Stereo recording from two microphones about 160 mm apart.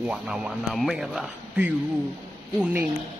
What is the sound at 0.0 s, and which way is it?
A man's voice, 5° right (ahead or behind).